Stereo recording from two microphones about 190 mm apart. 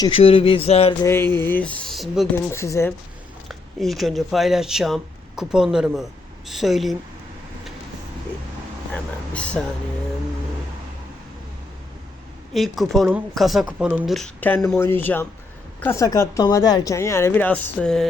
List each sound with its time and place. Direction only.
0.0 s speech: 30° left (ahead or behind)
1.0 s speech: 10° left (ahead or behind)
2.3 s speech: 15° left (ahead or behind)
3.5 s speech: centre (ahead or behind)
9.3 s speech: 5° left (ahead or behind)
12.5 s speech: centre (ahead or behind)